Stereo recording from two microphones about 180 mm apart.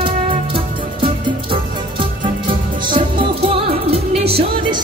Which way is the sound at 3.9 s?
35° right (ahead or behind).